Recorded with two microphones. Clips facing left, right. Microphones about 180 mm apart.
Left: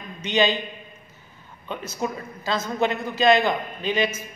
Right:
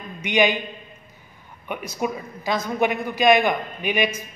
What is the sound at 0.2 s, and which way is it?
Speech, 15° right (ahead or behind).